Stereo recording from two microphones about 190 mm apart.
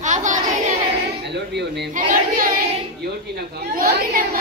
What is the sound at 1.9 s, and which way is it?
A child's voice, 45° right (ahead or behind).